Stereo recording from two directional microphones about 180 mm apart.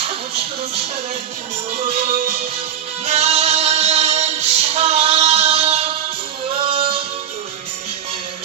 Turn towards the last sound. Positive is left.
turn(degrees=-30)  # may be behind; listen again after turning